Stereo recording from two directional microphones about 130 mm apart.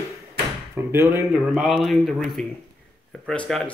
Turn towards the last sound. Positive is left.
turn(degrees=5)  # may be behind; listen again after turning